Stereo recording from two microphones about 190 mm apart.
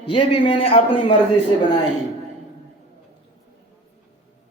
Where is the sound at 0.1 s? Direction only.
25° left (ahead or behind).